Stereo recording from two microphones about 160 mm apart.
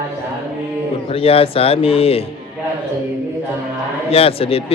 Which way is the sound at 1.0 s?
35° left (ahead or behind).